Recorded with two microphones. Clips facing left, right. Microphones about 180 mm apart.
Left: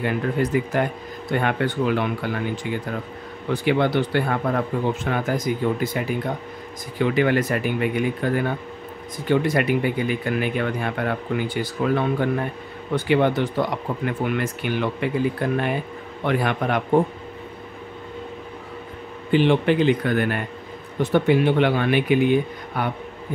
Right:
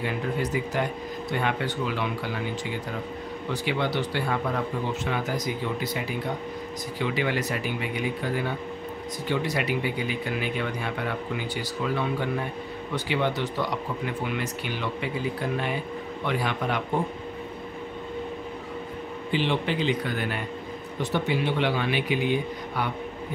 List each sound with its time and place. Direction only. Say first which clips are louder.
0.0 s speech: left 5 dB; 55° left (ahead or behind)
19.3 s speech: left 8 dB; 55° left (ahead or behind)